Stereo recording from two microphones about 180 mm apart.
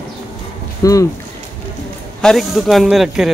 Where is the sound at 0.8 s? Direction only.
20° left (ahead or behind).